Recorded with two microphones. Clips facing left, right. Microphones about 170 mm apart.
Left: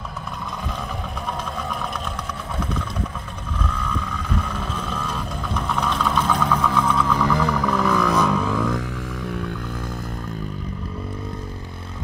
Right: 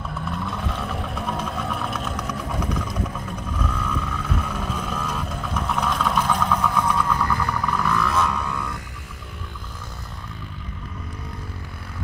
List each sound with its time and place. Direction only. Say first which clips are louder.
3.6 s vehicle: even; 10° right (ahead or behind)
7.3 s a sound: left 5 dB; 90° left
7.6 s vehicle: left 4 dB; centre (ahead or behind)
8.5 s music: left 8 dB; 90° left